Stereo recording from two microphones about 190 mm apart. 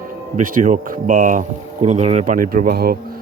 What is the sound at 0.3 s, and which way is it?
Speech, 45° right (ahead or behind).